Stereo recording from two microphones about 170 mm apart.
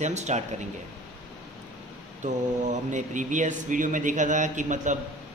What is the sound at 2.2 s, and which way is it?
Speech, 45° right (ahead or behind).